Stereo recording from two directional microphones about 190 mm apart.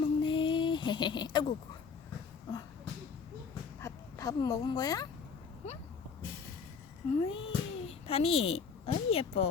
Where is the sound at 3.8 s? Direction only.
15° left (ahead or behind).